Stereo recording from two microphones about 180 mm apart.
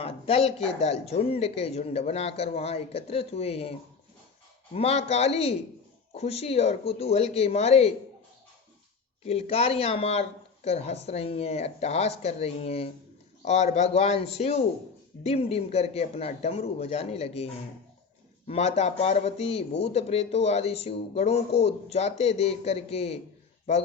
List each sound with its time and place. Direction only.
0.0 s speech: 35° left (ahead or behind)
9.2 s speech: 35° left (ahead or behind)